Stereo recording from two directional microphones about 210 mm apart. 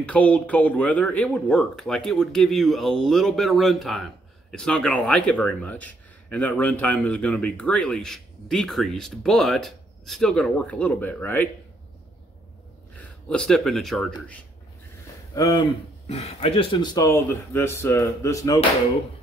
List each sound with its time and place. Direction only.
0.1 s speech: 5° left (ahead or behind)
12.9 s speech: 5° left (ahead or behind)
15.3 s speech: 15° left (ahead or behind)
16.1 s speech: 30° left (ahead or behind)